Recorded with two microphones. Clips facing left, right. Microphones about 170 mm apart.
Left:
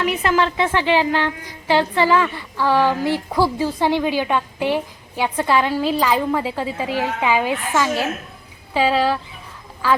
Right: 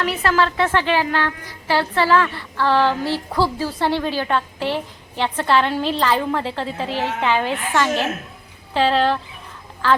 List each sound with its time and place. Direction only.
0.0 s a woman's voice: 15° left (ahead or behind)